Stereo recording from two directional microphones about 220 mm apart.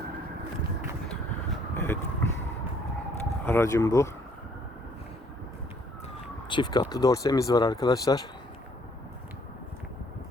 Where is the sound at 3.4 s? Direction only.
15° left (ahead or behind).